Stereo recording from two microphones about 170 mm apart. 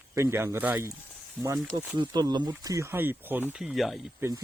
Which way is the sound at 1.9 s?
25° right (ahead or behind).